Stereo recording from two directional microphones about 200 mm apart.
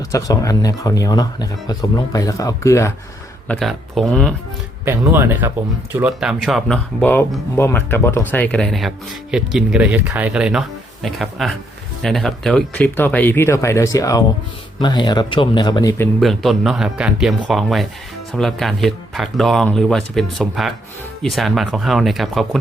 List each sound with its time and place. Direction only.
0.1 s speech: 15° left (ahead or behind)
3.5 s speech: centre (ahead or behind)
4.9 s speech: 10° right (ahead or behind); by 16.0 s 15° left (ahead or behind)
16.2 s speech: centre (ahead or behind)